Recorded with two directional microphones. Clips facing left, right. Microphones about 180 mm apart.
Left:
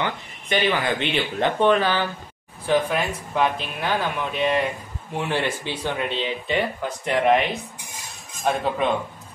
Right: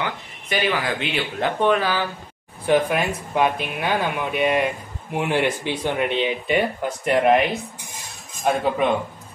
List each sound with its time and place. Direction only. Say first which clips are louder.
0.0 s a sound: left 1 dB; 5° right (ahead or behind)
0.7 s speech: left 1 dB; 5° right (ahead or behind)
8.5 s speech: right 2 dB; 10° right (ahead or behind)